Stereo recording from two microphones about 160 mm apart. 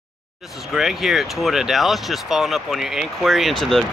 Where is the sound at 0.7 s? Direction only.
Centre (ahead or behind).